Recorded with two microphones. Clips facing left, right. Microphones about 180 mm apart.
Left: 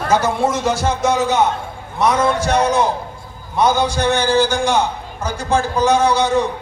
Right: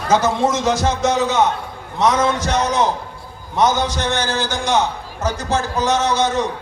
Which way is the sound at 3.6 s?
10° left (ahead or behind).